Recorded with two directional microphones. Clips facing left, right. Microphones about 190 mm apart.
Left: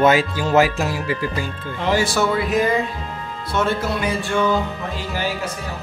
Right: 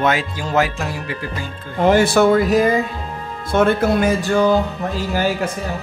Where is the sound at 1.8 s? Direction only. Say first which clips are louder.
Right 6 dB; 55° right (ahead or behind).